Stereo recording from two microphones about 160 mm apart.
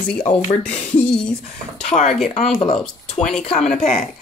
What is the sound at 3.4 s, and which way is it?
Speech, 45° left (ahead or behind).